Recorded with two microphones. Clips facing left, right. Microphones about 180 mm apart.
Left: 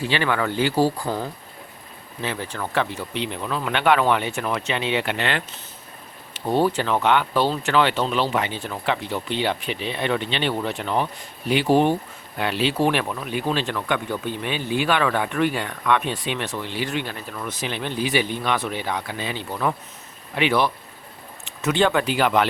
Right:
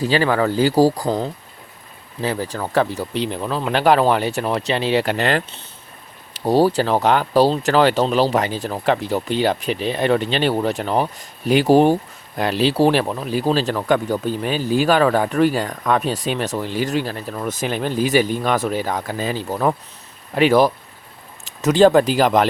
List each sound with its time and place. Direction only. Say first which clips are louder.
0.0 s speech: right 6 dB; 35° right (ahead or behind)
2.2 s speech: right 5 dB; 35° right (ahead or behind)